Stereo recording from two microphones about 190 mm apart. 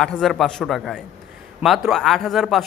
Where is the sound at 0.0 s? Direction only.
Centre (ahead or behind).